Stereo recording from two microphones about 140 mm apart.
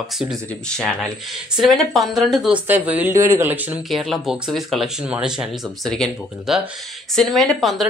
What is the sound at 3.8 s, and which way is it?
Speech, centre (ahead or behind).